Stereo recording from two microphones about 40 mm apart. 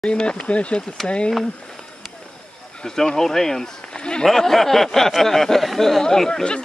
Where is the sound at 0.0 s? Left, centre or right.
Left.